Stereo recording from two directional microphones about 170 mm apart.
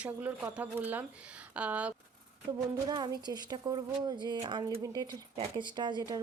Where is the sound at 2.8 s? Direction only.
25° right (ahead or behind).